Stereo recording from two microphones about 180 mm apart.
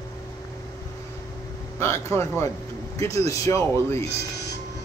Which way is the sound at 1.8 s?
15° left (ahead or behind).